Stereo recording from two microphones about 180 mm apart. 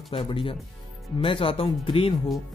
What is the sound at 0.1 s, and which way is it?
Speech, 30° left (ahead or behind).